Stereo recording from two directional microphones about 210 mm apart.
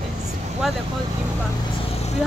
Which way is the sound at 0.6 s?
Centre (ahead or behind).